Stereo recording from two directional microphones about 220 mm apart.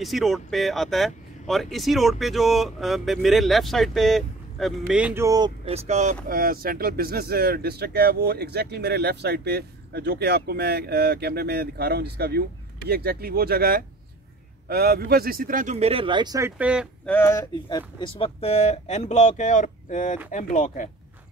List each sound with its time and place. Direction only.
0.0 s speech: centre (ahead or behind)
5.9 s speech: 30° right (ahead or behind); by 16.8 s 5° right (ahead or behind)
17.0 s speech: 10° left (ahead or behind); by 20.9 s 35° left (ahead or behind)